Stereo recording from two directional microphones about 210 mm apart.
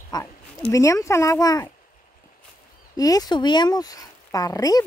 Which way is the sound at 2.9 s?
15° left (ahead or behind).